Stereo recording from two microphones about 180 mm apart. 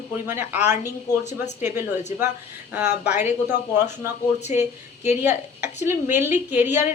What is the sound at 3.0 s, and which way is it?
Speech, 10° right (ahead or behind).